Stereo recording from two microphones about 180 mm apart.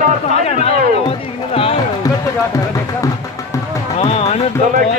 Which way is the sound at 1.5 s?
30° left (ahead or behind).